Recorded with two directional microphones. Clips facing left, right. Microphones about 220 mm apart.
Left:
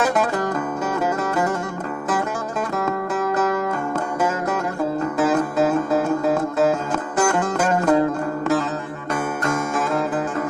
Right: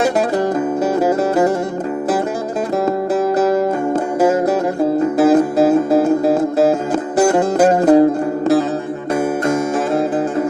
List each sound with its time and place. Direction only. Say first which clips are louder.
0.0 s music: right 5 dB; 35° right (ahead or behind)
2.8 s music: right 8 dB; 35° right (ahead or behind)